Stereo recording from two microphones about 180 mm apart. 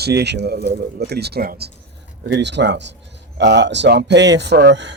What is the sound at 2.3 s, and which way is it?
A man's voice, 75° right (ahead or behind).